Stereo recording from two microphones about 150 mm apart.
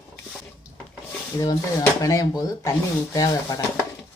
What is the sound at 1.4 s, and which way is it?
Speech, 25° left (ahead or behind).